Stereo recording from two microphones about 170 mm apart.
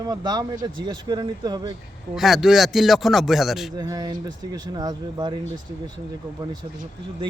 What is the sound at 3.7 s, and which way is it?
Speech, 20° right (ahead or behind).